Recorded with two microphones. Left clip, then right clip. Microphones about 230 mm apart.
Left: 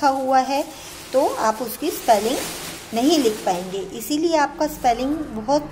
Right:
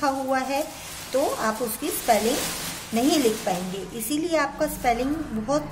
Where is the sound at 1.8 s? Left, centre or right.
Centre.